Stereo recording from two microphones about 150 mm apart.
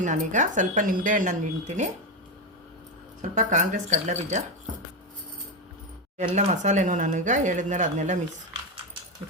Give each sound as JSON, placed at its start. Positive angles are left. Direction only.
{"t": 0.0, "sound": "speech", "side_deg": -55}
{"t": 3.2, "sound": "speech", "side_deg": -60}
{"t": 6.1, "sound": "speech", "side_deg": -50}